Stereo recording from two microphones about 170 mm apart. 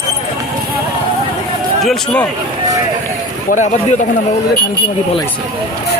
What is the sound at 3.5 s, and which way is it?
Speech, 45° left (ahead or behind).